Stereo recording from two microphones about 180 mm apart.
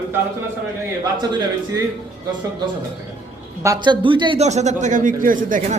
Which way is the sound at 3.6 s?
20° right (ahead or behind).